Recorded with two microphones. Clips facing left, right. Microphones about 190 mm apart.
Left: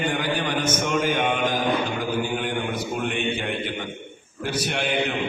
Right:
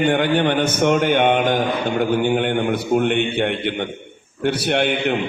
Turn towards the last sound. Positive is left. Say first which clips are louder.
# right 6 dB
turn(degrees=-65)  # may be behind; listen again after turning